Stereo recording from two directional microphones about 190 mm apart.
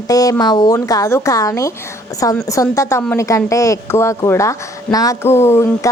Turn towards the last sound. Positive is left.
turn(degrees=15)  # may be behind; listen again after turning